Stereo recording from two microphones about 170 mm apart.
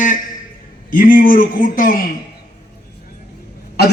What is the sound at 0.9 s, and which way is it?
A man's voice, 50° left (ahead or behind).